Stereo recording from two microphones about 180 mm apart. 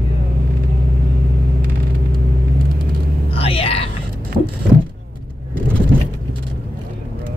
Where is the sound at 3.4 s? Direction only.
30° left (ahead or behind).